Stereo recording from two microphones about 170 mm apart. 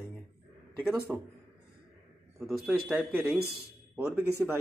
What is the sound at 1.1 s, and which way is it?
Speech, 5° left (ahead or behind).